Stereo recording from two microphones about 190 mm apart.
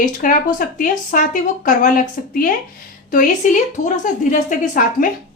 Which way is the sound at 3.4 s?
40° left (ahead or behind).